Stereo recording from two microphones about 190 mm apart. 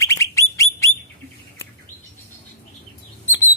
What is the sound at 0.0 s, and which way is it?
Bird, 15° left (ahead or behind).